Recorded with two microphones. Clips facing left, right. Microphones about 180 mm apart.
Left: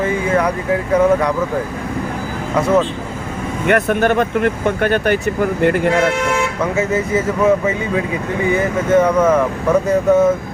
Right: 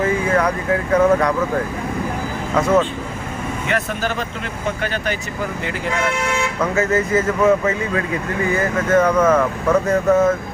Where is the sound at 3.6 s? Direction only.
60° left (ahead or behind).